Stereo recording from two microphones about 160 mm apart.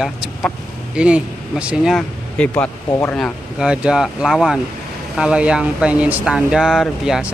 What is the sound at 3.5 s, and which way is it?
Speech, 5° right (ahead or behind).